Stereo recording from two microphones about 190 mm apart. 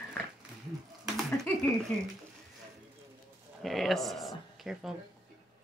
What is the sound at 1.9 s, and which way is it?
Speech, 5° left (ahead or behind).